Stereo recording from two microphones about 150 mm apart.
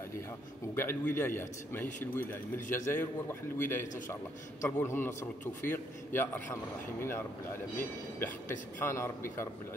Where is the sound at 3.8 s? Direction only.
60° left (ahead or behind).